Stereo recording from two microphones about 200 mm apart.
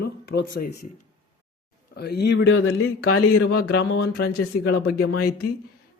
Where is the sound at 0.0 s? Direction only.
55° left (ahead or behind).